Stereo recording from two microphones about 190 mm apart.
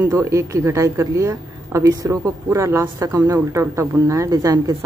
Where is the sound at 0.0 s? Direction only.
15° right (ahead or behind).